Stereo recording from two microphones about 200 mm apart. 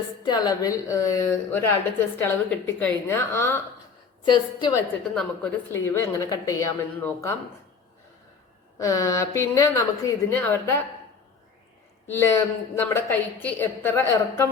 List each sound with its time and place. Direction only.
0.2 s a woman's voice: 20° left (ahead or behind)
5.0 s a woman's voice: 5° left (ahead or behind)
8.8 s a woman's voice: 15° left (ahead or behind)
12.0 s a woman's voice: 10° left (ahead or behind)